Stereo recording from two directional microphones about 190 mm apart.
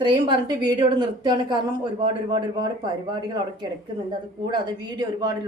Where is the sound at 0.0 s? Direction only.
25° right (ahead or behind).